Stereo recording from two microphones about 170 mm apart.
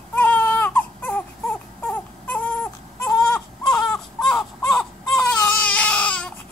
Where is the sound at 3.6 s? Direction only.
5° left (ahead or behind).